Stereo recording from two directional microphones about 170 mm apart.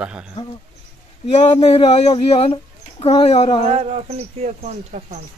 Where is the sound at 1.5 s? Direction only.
35° left (ahead or behind).